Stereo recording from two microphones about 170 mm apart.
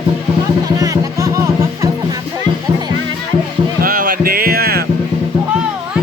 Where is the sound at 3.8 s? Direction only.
55° right (ahead or behind).